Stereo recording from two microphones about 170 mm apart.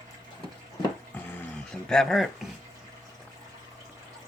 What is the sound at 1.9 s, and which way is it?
Speech, centre (ahead or behind).